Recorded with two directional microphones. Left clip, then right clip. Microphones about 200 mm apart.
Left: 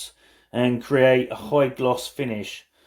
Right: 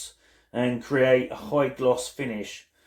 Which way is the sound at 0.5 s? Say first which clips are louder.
Left 4 dB; 45° left (ahead or behind).